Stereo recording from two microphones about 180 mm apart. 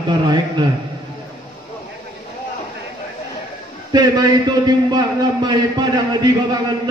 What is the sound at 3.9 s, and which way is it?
A man's voice, 20° right (ahead or behind).